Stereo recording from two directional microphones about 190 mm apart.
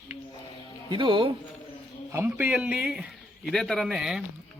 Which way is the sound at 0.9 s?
25° right (ahead or behind).